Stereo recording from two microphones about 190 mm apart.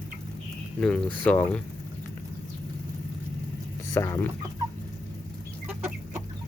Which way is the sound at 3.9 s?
15° left (ahead or behind).